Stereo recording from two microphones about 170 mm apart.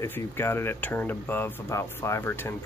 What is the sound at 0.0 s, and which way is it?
Speech, 15° left (ahead or behind).